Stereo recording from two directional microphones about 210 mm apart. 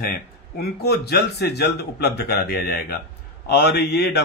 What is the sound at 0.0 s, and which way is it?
A man's voice, 45° left (ahead or behind).